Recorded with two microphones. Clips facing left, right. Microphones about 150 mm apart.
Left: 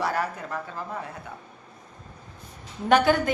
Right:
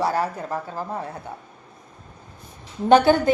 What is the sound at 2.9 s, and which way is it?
Speech, 30° right (ahead or behind).